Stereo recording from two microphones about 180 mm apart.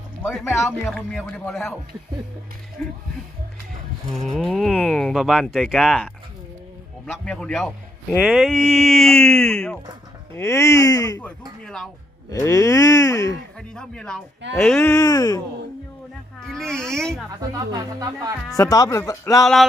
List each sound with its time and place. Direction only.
0.2 s speech: 10° left (ahead or behind)
0.7 s speech: centre (ahead or behind)
4.1 s speech: centre (ahead or behind)
7.1 s speech: 5° left (ahead or behind)
10.3 s speech: 15° left (ahead or behind)
11.6 s speech: 5° left (ahead or behind)
12.3 s speech: 20° left (ahead or behind)
13.6 s speech: 5° left (ahead or behind)
14.8 s a man's voice: 20° left (ahead or behind)
16.4 s speech: 5° left (ahead or behind)
17.6 s speech: 20° right (ahead or behind)
18.5 s a man's voice: 20° left (ahead or behind)